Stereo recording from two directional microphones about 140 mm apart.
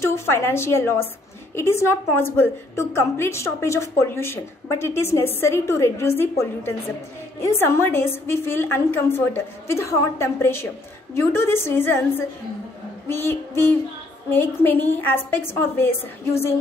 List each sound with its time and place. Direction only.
0.0 s a woman's voice: 20° left (ahead or behind)